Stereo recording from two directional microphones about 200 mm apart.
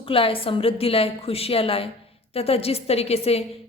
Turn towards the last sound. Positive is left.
turn(degrees=30)  # may be behind; listen again after turning